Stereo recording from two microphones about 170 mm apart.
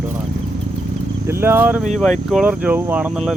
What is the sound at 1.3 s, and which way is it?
Speech, 15° right (ahead or behind).